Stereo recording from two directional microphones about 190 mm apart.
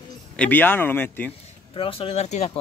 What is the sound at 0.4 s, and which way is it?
Speech, 10° left (ahead or behind).